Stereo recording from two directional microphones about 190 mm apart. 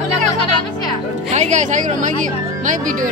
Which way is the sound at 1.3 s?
40° right (ahead or behind).